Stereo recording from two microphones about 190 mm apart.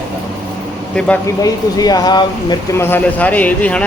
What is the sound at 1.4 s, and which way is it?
Speech, 20° left (ahead or behind).